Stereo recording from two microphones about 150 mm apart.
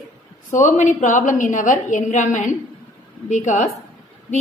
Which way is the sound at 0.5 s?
55° left (ahead or behind).